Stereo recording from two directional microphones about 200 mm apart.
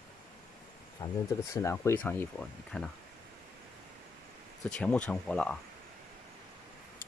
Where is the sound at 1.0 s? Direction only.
15° left (ahead or behind).